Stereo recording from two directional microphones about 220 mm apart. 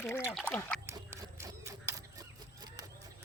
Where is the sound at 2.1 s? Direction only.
15° right (ahead or behind).